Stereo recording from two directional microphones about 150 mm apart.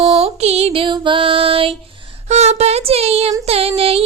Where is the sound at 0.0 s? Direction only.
45° right (ahead or behind).